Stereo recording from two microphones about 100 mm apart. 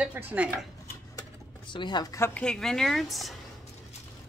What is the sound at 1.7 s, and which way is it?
Speech, 50° left (ahead or behind).